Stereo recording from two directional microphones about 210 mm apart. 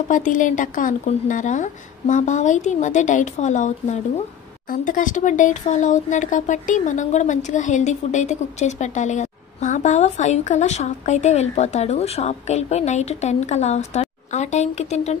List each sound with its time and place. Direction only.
0.1 s speech: 40° left (ahead or behind)